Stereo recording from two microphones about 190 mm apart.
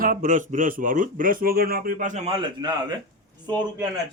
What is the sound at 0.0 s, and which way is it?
A man's voice, 45° right (ahead or behind).